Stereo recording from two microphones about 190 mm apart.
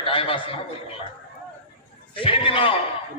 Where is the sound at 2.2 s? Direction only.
25° left (ahead or behind).